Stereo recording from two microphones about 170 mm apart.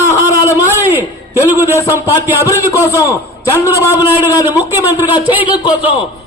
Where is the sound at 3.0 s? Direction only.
20° left (ahead or behind).